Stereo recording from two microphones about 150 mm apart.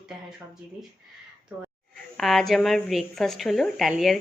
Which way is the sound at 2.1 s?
Centre (ahead or behind).